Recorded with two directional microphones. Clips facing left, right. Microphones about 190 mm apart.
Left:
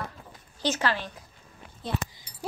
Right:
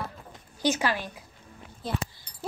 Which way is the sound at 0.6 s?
10° right (ahead or behind).